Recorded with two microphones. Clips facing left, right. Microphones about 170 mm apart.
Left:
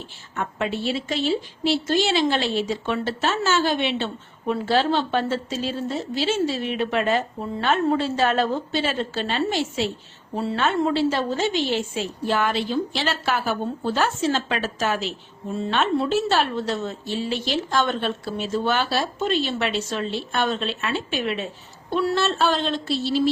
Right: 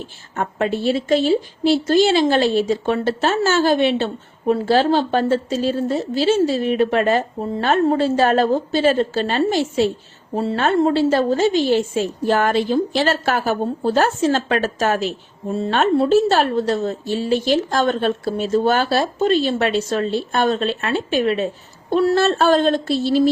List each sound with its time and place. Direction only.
0.3 s a woman's voice: 45° right (ahead or behind)